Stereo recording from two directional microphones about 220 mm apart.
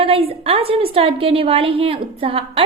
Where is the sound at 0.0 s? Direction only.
25° right (ahead or behind).